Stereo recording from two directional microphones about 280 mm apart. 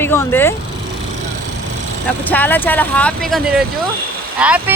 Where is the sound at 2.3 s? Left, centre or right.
Centre.